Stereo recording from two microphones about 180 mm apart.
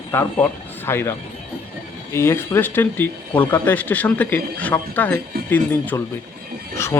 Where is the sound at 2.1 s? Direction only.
15° left (ahead or behind).